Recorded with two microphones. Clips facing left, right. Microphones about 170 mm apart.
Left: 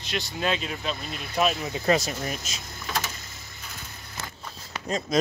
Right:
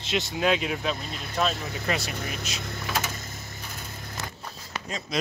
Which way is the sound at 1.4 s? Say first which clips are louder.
Left 2 dB; 15° left (ahead or behind).